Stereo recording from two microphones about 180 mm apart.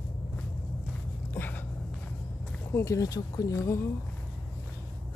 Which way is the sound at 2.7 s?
15° left (ahead or behind).